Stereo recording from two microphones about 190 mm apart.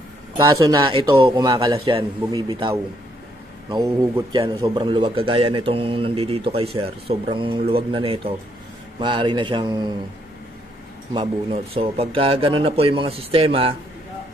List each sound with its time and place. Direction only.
0.4 s a man's voice: 20° right (ahead or behind)
11.1 s a man's voice: 30° right (ahead or behind)